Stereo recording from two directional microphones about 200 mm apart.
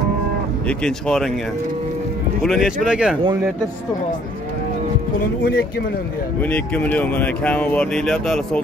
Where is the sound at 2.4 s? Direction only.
Centre (ahead or behind).